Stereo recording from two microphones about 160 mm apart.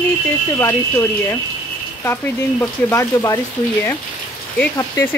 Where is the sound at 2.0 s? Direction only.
15° left (ahead or behind).